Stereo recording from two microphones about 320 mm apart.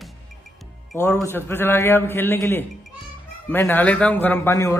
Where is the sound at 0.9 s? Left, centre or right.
Centre.